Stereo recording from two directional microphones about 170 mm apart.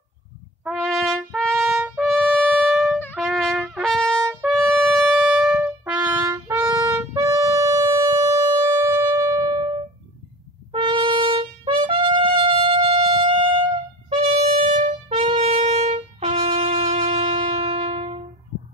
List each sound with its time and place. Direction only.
0.7 s trumpet: centre (ahead or behind)
2.4 s music: 5° right (ahead or behind)
3.2 s trumpet: centre (ahead or behind)
4.3 s brass instrument: centre (ahead or behind); by 7.0 s 15° right (ahead or behind)
7.0 s music: 15° right (ahead or behind)
10.7 s brass instrument: 30° right (ahead or behind)